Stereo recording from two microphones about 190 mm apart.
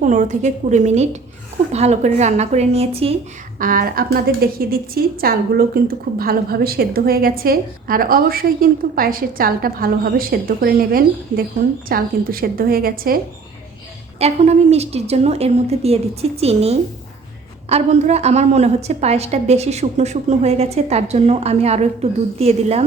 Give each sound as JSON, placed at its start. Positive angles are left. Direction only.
{"t": 0.0, "sound": "a woman's voice", "side_deg": -40}
{"t": 3.6, "sound": "a woman's voice", "side_deg": -50}
{"t": 14.2, "sound": "a woman's voice", "side_deg": -35}